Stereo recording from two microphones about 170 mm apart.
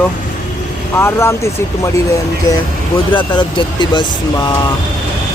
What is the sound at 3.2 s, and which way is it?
Speech, 25° left (ahead or behind).